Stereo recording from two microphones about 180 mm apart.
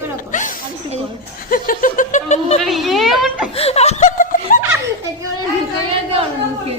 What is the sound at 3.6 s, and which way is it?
Laughter, 35° left (ahead or behind).